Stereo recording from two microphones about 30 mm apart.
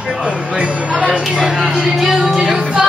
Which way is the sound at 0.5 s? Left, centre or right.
Right.